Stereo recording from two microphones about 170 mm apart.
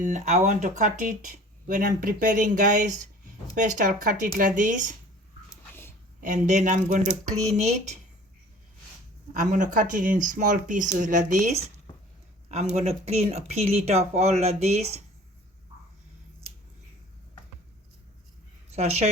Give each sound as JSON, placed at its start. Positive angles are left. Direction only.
{"t": 0.0, "sound": "speech", "side_deg": -45}
{"t": 5.5, "sound": "a sound", "side_deg": 15}
{"t": 6.1, "sound": "speech", "side_deg": -45}
{"t": 9.5, "sound": "speech", "side_deg": -50}
{"t": 18.8, "sound": "speech", "side_deg": -40}